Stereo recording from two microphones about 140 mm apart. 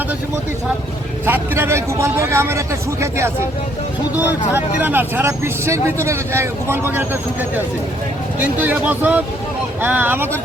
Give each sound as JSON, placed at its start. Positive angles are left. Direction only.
{"t": 1.2, "sound": "speech", "side_deg": -15}